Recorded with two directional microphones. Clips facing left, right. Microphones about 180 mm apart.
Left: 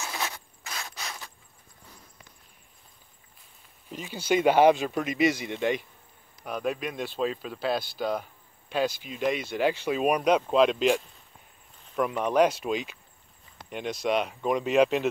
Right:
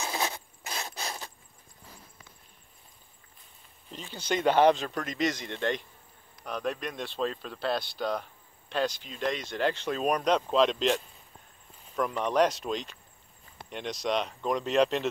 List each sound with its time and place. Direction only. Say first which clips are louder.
0.0 s zipper: right 2 dB; 15° right (ahead or behind); by 1.3 s 35° right (ahead or behind)
3.9 s speech: left 5 dB; 10° left (ahead or behind)